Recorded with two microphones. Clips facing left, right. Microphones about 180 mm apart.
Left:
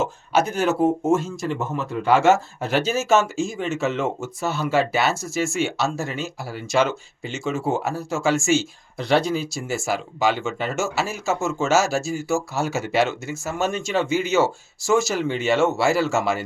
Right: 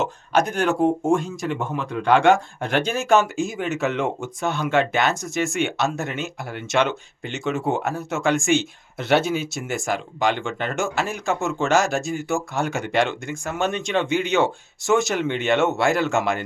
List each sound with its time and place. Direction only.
0.0 s speech: centre (ahead or behind)